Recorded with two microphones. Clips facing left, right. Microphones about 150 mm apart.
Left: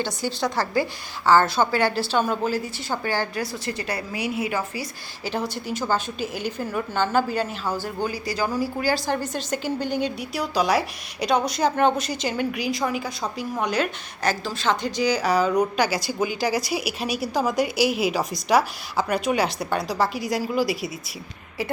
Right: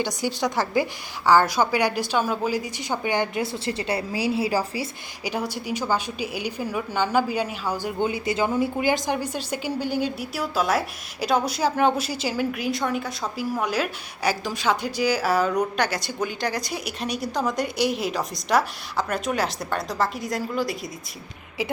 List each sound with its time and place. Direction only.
0.0 s a woman's voice: 15° right (ahead or behind)
5.2 s a woman's voice: 10° right (ahead or behind)
9.1 s a woman's voice: 10° right (ahead or behind); by 20.9 s 5° left (ahead or behind)